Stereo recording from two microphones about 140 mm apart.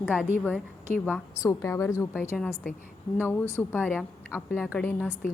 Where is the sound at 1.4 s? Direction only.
20° left (ahead or behind).